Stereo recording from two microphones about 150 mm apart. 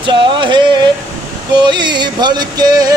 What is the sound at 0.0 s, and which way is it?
Music, 30° right (ahead or behind).